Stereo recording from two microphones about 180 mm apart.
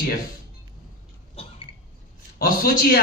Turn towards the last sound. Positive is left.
turn(degrees=55)  # may be behind; listen again after turning